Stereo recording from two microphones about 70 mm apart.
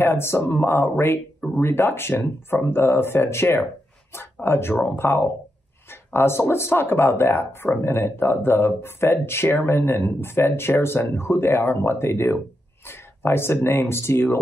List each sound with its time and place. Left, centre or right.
0.0 s a man's voice: left